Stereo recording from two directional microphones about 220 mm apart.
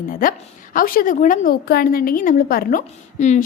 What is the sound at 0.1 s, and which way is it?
A woman's voice, 40° left (ahead or behind).